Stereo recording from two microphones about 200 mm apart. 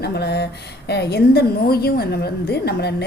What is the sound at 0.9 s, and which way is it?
A woman's voice, 55° left (ahead or behind).